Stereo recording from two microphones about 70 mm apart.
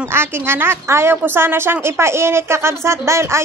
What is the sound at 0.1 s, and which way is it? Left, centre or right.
A woman's voice, right.